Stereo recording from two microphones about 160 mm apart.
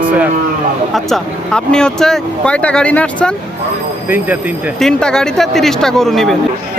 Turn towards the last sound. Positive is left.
turn(degrees=0)  # may be behind; listen again after turning